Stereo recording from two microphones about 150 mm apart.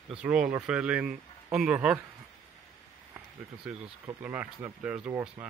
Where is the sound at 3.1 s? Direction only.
5° right (ahead or behind).